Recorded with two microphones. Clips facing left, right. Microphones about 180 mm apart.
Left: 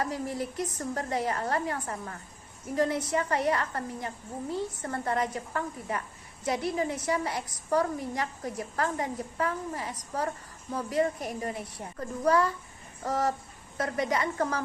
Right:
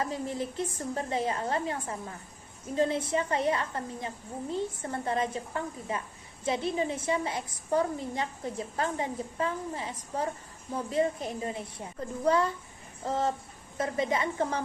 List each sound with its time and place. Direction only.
0.0 s a woman's voice: 20° right (ahead or behind)